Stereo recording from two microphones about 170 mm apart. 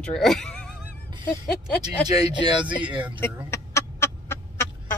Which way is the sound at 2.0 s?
25° right (ahead or behind).